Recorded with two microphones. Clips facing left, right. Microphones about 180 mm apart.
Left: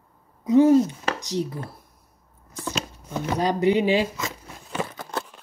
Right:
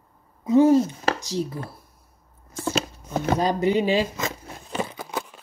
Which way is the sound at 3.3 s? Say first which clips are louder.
Left 2 dB; 15° left (ahead or behind).